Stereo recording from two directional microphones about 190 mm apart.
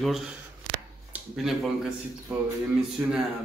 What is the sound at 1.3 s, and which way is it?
Speech, centre (ahead or behind).